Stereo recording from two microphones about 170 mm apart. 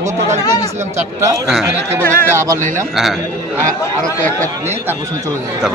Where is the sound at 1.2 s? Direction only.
20° right (ahead or behind).